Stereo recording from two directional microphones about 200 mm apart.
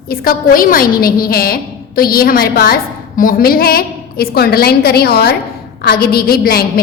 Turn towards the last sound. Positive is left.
turn(degrees=50)  # may be behind; listen again after turning